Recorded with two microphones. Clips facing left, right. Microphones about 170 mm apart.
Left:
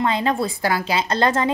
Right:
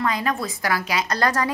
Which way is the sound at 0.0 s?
25° left (ahead or behind).